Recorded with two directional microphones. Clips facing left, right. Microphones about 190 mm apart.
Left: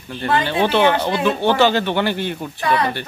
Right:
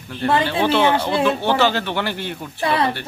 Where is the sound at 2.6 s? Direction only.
30° right (ahead or behind).